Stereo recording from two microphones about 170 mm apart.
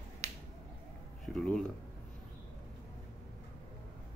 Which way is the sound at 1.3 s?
5° left (ahead or behind).